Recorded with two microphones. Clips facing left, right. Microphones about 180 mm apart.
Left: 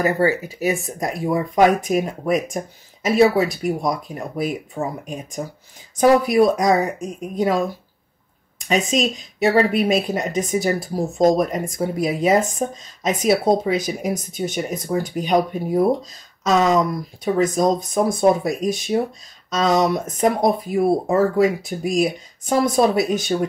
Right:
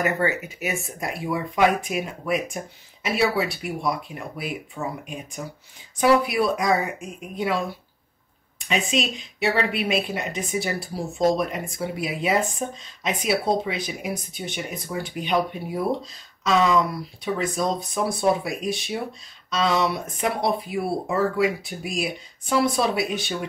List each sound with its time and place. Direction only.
0.0 s speech: 35° left (ahead or behind)